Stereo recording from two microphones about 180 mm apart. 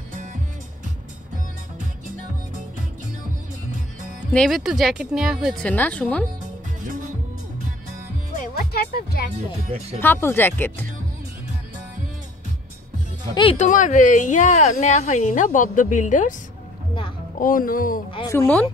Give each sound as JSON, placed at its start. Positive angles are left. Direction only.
{"t": 0.1, "sound": "music", "side_deg": -45}
{"t": 4.3, "sound": "speech", "side_deg": 0}
{"t": 8.4, "sound": "music", "side_deg": 55}
{"t": 9.9, "sound": "speech", "side_deg": 10}
{"t": 13.3, "sound": "speech", "side_deg": 25}
{"t": 13.6, "sound": "a woman's voice", "side_deg": 45}
{"t": 17.4, "sound": "a woman's voice", "side_deg": 50}
{"t": 18.3, "sound": "speech", "side_deg": 10}